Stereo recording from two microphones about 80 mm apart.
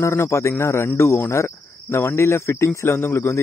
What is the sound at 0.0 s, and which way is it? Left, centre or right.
Speech, left.